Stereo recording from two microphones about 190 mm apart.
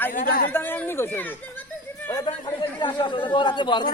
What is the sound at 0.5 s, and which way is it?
Speech, 10° left (ahead or behind).